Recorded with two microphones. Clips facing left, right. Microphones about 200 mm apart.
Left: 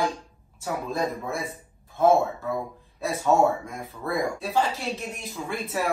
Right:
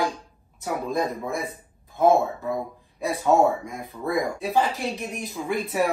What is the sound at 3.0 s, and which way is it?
Speech, 15° right (ahead or behind).